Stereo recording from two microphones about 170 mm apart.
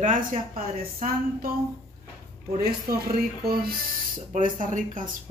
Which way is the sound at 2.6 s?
65° right (ahead or behind).